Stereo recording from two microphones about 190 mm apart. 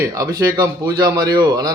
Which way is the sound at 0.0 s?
20° right (ahead or behind).